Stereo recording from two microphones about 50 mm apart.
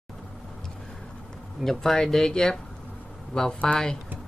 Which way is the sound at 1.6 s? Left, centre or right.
Centre.